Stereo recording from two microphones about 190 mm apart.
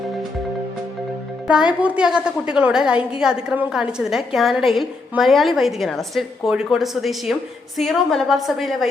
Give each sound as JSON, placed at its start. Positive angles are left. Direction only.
{"t": 1.5, "sound": "a woman's voice", "side_deg": -5}